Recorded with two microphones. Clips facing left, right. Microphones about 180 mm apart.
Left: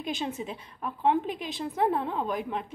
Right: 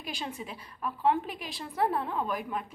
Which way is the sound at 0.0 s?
20° left (ahead or behind).